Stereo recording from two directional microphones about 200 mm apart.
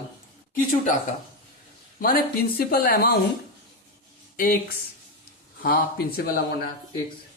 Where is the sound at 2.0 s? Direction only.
45° left (ahead or behind).